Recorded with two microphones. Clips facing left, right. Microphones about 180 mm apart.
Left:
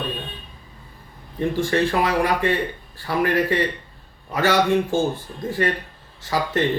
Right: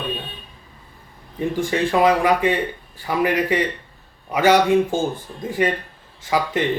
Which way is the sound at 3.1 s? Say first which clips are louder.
Right 1 dB; 15° right (ahead or behind).